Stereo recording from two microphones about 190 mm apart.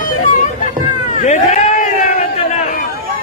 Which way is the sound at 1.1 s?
40° left (ahead or behind).